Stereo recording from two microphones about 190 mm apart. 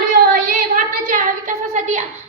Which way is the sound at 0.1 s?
50° right (ahead or behind).